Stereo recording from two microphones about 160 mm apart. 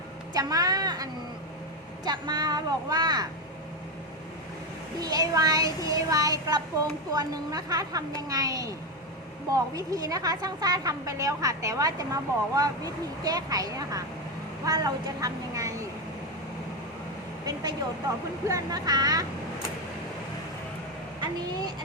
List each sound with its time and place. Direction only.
0.3 s a woman's voice: 25° right (ahead or behind)
2.0 s a woman's voice: 25° right (ahead or behind)
4.9 s a woman's voice: 25° right (ahead or behind)
17.4 s vehicle: 25° right (ahead or behind)
18.4 s a woman's voice: 20° right (ahead or behind)